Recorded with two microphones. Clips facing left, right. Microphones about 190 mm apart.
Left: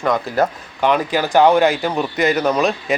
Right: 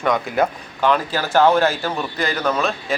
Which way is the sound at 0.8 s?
15° left (ahead or behind).